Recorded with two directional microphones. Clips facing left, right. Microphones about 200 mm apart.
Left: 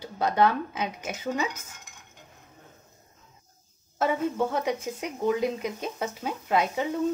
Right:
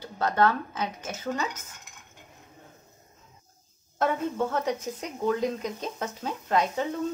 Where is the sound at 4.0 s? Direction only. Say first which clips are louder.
Left 1 dB; 10° left (ahead or behind).